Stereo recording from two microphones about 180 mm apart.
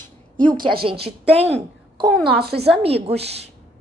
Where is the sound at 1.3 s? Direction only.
35° right (ahead or behind).